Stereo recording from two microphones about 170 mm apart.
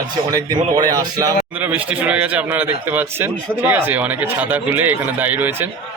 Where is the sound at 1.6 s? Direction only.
10° right (ahead or behind).